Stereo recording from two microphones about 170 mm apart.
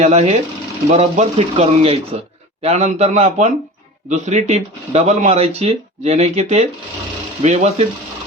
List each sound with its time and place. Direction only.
0.0 s speech: 40° right (ahead or behind)